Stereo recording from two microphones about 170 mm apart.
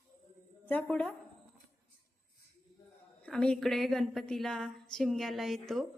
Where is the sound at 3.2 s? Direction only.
5° left (ahead or behind).